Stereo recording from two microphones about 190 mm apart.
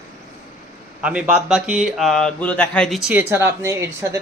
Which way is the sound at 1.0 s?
5° right (ahead or behind).